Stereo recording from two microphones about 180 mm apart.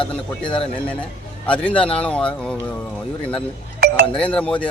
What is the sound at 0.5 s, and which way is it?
Speech, 5° left (ahead or behind).